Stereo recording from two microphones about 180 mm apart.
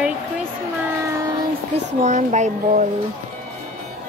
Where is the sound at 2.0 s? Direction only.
40° right (ahead or behind).